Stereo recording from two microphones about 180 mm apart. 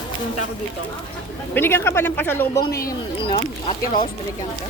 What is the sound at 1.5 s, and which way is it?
Speech, 10° left (ahead or behind).